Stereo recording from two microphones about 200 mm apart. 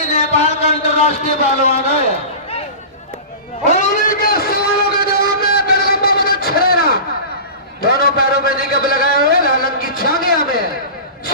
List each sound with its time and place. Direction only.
0.1 s speech: 35° left (ahead or behind)
3.6 s music: 35° left (ahead or behind)
7.8 s a sound: 50° left (ahead or behind)